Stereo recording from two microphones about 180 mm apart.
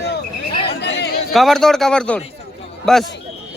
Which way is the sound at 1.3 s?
Centre (ahead or behind).